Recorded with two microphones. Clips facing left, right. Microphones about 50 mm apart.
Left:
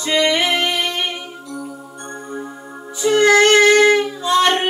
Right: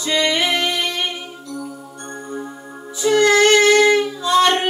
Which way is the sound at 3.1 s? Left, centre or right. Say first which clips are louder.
Left 1 dB; left.